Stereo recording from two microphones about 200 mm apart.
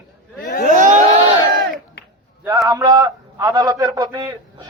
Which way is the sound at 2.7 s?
20° right (ahead or behind).